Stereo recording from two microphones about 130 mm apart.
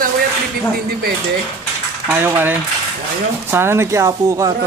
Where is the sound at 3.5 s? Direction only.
20° right (ahead or behind).